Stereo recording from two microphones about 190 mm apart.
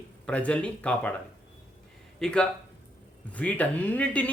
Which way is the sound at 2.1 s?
5° left (ahead or behind).